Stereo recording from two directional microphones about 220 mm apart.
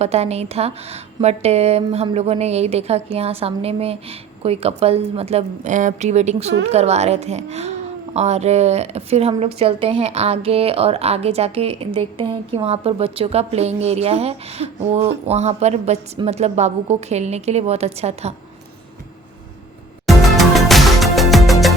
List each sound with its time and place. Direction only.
0.0 s a woman's voice: 30° right (ahead or behind)
20.1 s music: centre (ahead or behind)